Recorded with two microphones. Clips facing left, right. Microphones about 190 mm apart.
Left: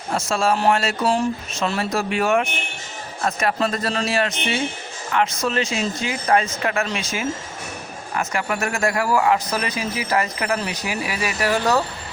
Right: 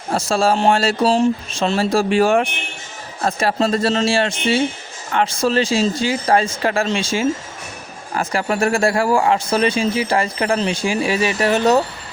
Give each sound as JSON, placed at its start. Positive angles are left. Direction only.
{"t": 0.1, "sound": "speech", "side_deg": -30}